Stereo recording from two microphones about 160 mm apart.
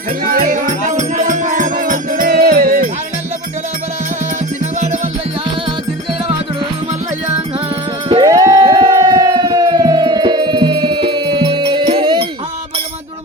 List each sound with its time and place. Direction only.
0.3 s music: 60° right (ahead or behind)
8.1 s siren: 25° right (ahead or behind)